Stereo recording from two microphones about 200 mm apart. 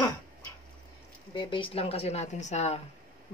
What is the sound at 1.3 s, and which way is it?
Speech, 25° left (ahead or behind).